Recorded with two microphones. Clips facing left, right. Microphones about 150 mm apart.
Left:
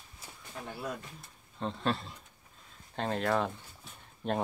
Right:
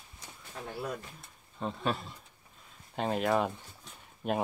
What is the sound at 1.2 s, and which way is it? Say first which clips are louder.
Speech: even; 5° right (ahead or behind).